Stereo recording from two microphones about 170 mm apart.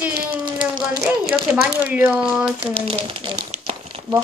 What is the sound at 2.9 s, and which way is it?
Crumpling, 30° right (ahead or behind).